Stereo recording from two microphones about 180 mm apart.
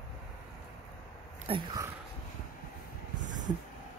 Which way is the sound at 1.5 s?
30° right (ahead or behind).